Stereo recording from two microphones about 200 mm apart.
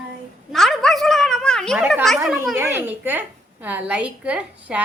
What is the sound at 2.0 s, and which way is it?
A woman's voice, centre (ahead or behind).